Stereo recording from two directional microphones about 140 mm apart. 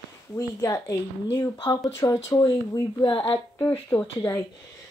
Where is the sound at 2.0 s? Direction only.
25° left (ahead or behind).